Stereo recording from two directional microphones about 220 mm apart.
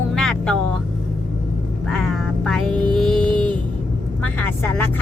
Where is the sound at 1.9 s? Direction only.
Centre (ahead or behind).